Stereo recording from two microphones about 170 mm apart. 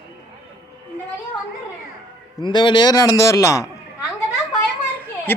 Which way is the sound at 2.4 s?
25° left (ahead or behind).